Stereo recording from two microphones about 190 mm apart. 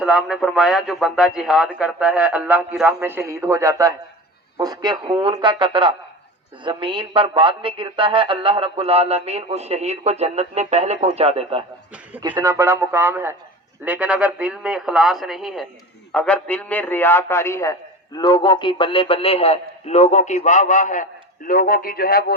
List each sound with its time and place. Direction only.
0.0 s a man's voice: centre (ahead or behind); by 11.6 s 30° right (ahead or behind)
12.3 s a man's voice: 15° right (ahead or behind); by 22.4 s 55° left (ahead or behind)